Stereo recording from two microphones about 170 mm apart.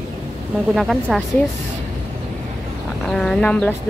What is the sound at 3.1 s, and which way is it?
Speech, 5° left (ahead or behind).